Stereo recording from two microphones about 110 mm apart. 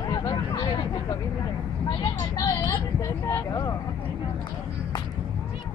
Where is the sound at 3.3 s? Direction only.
30° left (ahead or behind).